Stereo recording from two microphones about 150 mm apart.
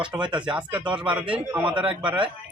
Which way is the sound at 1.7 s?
35° right (ahead or behind).